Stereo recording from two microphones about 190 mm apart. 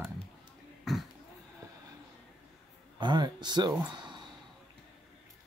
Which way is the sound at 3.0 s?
25° right (ahead or behind).